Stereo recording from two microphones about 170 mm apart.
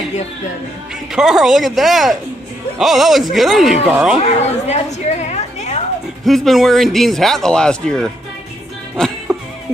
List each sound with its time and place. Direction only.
1.1 s speech: centre (ahead or behind)
4.2 s a woman's voice: 40° left (ahead or behind)
6.2 s speech: centre (ahead or behind)